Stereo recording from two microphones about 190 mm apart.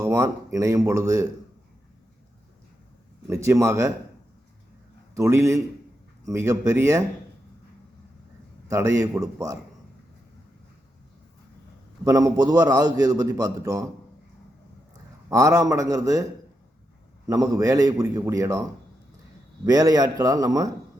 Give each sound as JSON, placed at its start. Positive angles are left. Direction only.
{"t": 0.0, "sound": "a man's voice", "side_deg": -15}
{"t": 3.2, "sound": "a man's voice", "side_deg": -15}
{"t": 5.1, "sound": "a man's voice", "side_deg": -15}
{"t": 8.6, "sound": "a man's voice", "side_deg": -15}
{"t": 12.0, "sound": "a man's voice", "side_deg": -20}
{"t": 15.3, "sound": "a man's voice", "side_deg": -15}
{"t": 17.2, "sound": "a man's voice", "side_deg": -15}